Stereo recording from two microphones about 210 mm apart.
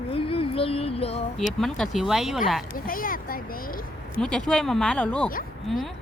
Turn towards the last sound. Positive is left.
turn(degrees=0)  # may be behind; listen again after turning